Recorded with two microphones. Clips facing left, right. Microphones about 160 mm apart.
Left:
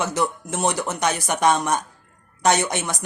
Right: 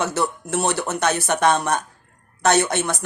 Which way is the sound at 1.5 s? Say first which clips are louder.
Right 1 dB; 60° right (ahead or behind).